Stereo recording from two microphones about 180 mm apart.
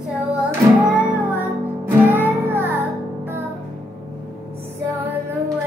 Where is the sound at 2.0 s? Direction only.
10° right (ahead or behind).